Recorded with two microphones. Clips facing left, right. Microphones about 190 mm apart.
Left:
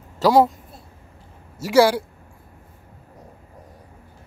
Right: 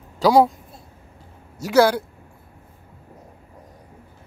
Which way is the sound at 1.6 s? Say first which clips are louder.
Left 1 dB; 5° left (ahead or behind).